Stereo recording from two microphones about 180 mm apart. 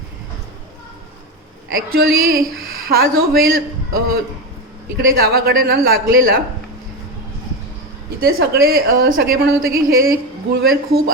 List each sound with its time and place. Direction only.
1.9 s a woman's voice: 55° right (ahead or behind)
8.2 s a woman's voice: 60° right (ahead or behind)